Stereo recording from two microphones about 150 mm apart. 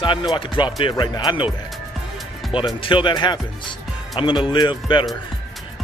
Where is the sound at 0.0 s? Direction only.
35° left (ahead or behind).